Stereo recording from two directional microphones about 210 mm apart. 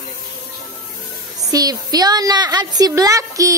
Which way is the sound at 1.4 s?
15° right (ahead or behind).